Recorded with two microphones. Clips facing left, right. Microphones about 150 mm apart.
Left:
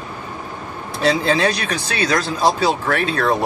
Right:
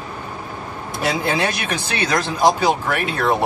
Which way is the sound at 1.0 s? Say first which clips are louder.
Left 4 dB; 15° right (ahead or behind).